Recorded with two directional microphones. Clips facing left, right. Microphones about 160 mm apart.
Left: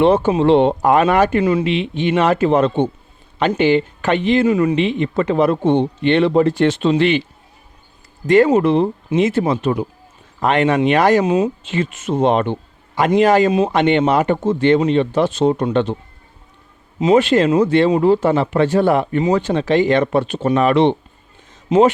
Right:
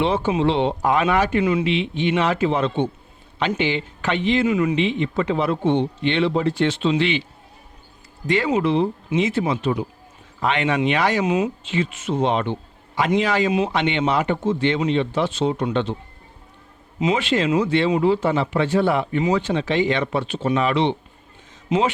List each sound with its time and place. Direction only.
0.0 s speech: 45° left (ahead or behind)
8.3 s speech: 45° left (ahead or behind)
17.0 s speech: 40° left (ahead or behind)